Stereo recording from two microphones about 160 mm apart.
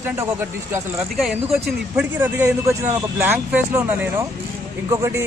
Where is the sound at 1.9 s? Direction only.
15° right (ahead or behind).